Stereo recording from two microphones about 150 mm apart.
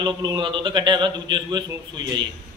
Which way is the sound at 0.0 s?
30° right (ahead or behind).